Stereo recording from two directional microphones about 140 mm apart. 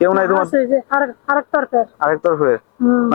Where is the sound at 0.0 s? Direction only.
25° left (ahead or behind).